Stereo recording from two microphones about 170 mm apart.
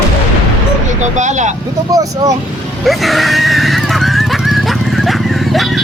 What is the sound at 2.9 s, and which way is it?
Horse, centre (ahead or behind).